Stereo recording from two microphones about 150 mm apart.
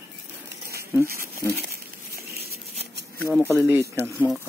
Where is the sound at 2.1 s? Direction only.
90° right.